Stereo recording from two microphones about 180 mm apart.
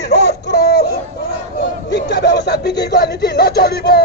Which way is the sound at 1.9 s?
70° left (ahead or behind).